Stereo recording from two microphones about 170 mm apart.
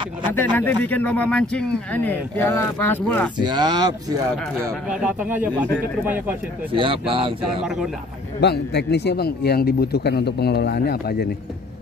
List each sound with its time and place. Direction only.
0.3 s speech: 10° left (ahead or behind)
3.3 s speech: 25° right (ahead or behind)
4.8 s speech: 5° right (ahead or behind)
6.7 s a man's voice: 30° right (ahead or behind)
7.6 s a man's voice: 5° right (ahead or behind)
8.4 s a man's voice: 80° left